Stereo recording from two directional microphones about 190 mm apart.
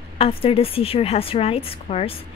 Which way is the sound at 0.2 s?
30° left (ahead or behind).